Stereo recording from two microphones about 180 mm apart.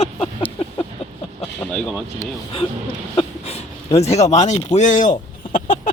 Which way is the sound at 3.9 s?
35° left (ahead or behind).